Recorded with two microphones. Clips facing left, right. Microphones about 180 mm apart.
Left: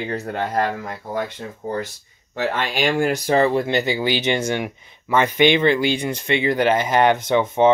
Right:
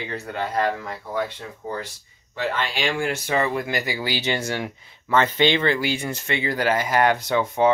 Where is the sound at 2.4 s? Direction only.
50° left (ahead or behind); by 7.7 s 20° left (ahead or behind).